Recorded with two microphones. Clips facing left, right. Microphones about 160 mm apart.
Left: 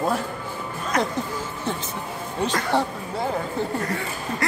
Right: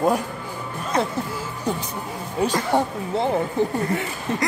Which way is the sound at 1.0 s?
10° right (ahead or behind).